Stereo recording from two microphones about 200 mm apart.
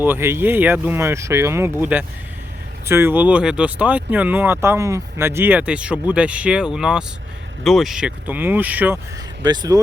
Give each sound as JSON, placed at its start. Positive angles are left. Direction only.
{"t": 0.0, "sound": "speech", "side_deg": -10}
{"t": 9.4, "sound": "speech", "side_deg": -20}